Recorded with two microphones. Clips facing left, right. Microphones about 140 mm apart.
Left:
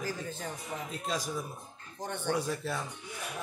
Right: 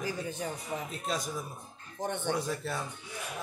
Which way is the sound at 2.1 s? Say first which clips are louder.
Left 1 dB; 20° right (ahead or behind).